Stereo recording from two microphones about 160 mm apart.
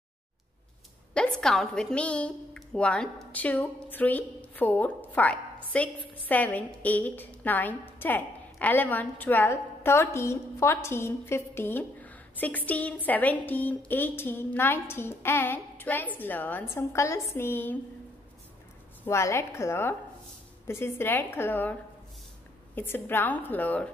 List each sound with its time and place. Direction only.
1.1 s a woman's voice: 5° left (ahead or behind)
19.0 s a woman's voice: 15° left (ahead or behind)
22.8 s a woman's voice: 15° left (ahead or behind)